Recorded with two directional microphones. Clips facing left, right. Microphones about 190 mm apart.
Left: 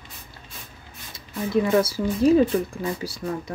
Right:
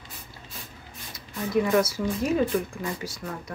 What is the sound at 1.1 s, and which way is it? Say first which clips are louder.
Speech: left 2 dB; 25° left (ahead or behind).